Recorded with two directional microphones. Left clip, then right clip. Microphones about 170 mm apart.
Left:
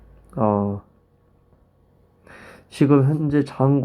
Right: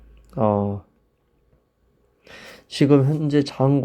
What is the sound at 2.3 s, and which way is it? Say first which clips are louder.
Speech: right 5 dB; 25° right (ahead or behind).